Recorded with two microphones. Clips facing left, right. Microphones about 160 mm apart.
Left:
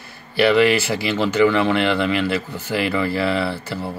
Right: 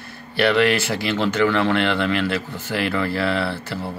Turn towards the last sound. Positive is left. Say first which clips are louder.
# left 1 dB
turn(degrees=0)  # may be behind; listen again after turning